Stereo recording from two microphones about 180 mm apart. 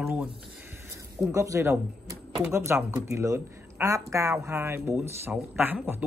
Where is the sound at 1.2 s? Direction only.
15° right (ahead or behind).